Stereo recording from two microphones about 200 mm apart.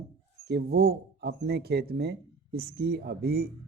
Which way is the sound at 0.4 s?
55° right (ahead or behind).